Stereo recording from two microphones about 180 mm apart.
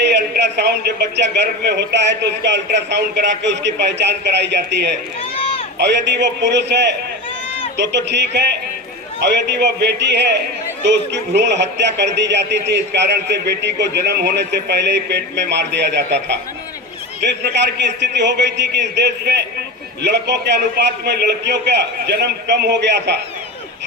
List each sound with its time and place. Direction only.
0.0 s speech: 75° right (ahead or behind)